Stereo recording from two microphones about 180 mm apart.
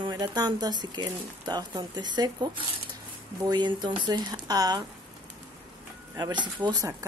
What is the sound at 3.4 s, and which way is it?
Speech, 25° right (ahead or behind).